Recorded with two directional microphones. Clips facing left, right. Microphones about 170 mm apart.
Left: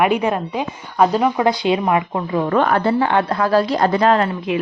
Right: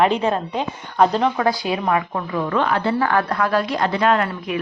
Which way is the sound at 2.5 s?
45° left (ahead or behind).